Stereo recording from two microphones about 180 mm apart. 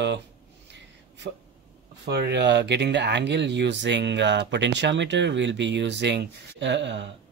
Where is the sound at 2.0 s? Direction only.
65° right (ahead or behind).